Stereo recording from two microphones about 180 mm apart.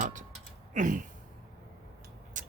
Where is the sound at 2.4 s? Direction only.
45° right (ahead or behind).